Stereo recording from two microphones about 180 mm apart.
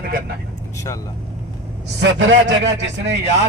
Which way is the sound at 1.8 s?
80° right.